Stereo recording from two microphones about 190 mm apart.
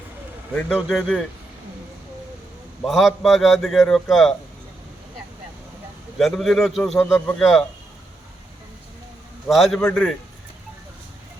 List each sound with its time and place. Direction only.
0.7 s a man's voice: centre (ahead or behind)
2.8 s a man's voice: centre (ahead or behind)
6.1 s a man's voice: centre (ahead or behind)
9.5 s a man's voice: centre (ahead or behind)